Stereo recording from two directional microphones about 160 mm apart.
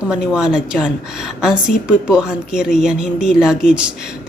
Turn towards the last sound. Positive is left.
turn(degrees=-5)  # may be behind; listen again after turning